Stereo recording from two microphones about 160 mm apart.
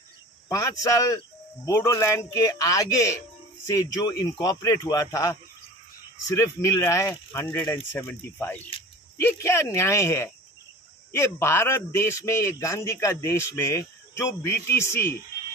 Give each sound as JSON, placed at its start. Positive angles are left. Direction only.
{"t": 0.5, "sound": "a man's voice", "side_deg": 20}